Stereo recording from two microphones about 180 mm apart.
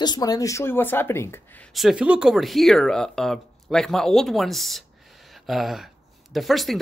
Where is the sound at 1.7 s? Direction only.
5° right (ahead or behind).